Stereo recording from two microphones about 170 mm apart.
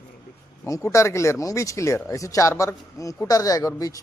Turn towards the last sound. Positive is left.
turn(degrees=20)  # may be behind; listen again after turning